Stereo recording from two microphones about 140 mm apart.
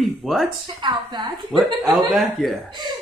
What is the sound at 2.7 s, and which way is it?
Speech, 30° right (ahead or behind).